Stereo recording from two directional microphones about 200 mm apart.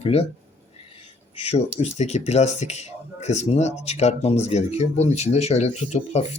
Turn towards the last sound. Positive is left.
turn(degrees=35)  # may be behind; listen again after turning